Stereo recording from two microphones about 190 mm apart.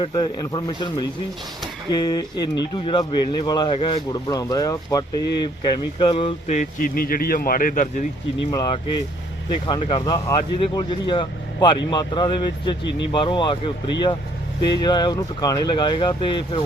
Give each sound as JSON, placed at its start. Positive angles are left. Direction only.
{"t": 0.0, "sound": "speech", "side_deg": 20}
{"t": 6.7, "sound": "speech", "side_deg": 50}
{"t": 8.4, "sound": "speech", "side_deg": 20}